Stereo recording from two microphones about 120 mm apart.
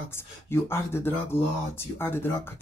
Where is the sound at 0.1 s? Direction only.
20° left (ahead or behind).